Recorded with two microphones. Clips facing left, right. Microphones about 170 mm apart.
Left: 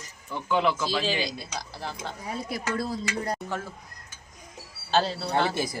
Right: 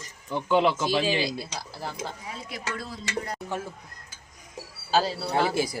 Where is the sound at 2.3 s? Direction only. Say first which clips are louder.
Left 5 dB; 35° left (ahead or behind).